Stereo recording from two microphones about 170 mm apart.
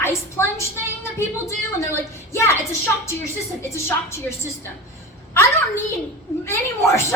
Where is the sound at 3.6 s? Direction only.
15° left (ahead or behind).